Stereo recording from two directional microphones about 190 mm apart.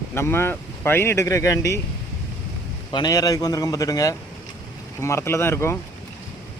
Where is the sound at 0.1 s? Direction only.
10° left (ahead or behind).